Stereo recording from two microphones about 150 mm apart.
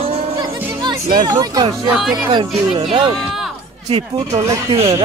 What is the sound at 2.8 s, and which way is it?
Speech, 35° right (ahead or behind).